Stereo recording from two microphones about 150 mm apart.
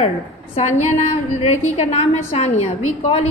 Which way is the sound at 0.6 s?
50° left (ahead or behind).